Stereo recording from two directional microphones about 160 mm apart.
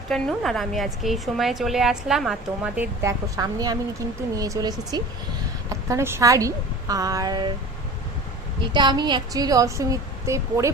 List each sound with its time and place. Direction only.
0.1 s a woman's voice: 5° left (ahead or behind); by 7.5 s 25° right (ahead or behind)
8.7 s a woman's voice: 30° right (ahead or behind)